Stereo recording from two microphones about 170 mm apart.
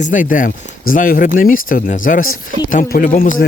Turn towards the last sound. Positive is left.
turn(degrees=55)  # may be behind; listen again after turning